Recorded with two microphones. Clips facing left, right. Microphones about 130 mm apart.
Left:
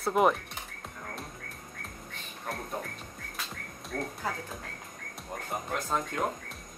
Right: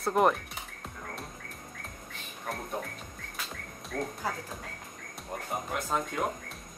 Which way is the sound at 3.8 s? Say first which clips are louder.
Right 1 dB; centre (ahead or behind).